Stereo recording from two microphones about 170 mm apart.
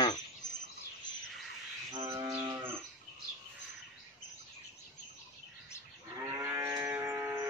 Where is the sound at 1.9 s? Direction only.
20° right (ahead or behind).